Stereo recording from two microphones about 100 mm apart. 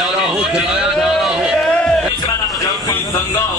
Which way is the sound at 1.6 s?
10° left (ahead or behind).